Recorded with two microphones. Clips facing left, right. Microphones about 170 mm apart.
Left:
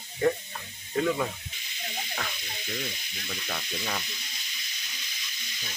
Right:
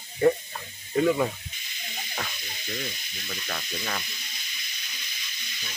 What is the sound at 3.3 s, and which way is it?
Sizzle, 5° left (ahead or behind).